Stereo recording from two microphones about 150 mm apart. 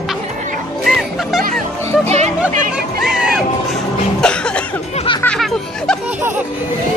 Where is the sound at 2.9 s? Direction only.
5° right (ahead or behind).